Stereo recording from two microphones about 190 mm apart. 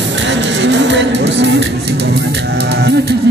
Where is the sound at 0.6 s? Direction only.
70° right (ahead or behind).